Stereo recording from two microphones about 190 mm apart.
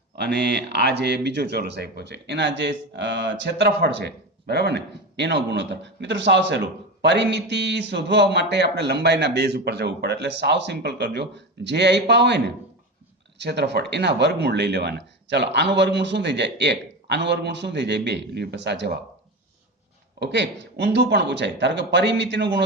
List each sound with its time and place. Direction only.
0.4 s speech: 60° right (ahead or behind)
13.4 s speech: 65° right (ahead or behind)
20.1 s speech: 65° right (ahead or behind)